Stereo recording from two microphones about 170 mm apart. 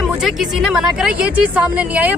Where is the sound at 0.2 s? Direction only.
Centre (ahead or behind).